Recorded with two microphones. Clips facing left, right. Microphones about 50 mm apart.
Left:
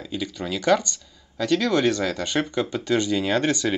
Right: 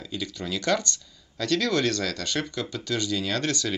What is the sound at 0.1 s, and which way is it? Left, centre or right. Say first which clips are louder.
Speech: left 3 dB; centre.